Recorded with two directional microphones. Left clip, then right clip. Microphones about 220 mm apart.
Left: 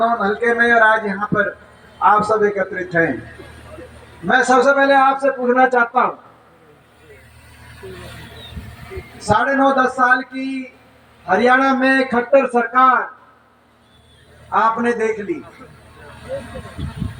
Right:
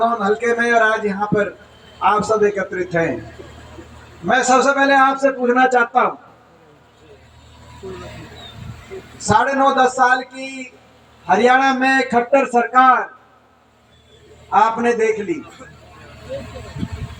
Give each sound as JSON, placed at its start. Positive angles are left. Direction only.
{"t": 0.4, "sound": "a man's voice", "side_deg": -45}
{"t": 4.3, "sound": "a man's voice", "side_deg": -55}
{"t": 9.2, "sound": "a man's voice", "side_deg": -45}
{"t": 14.5, "sound": "a man's voice", "side_deg": -50}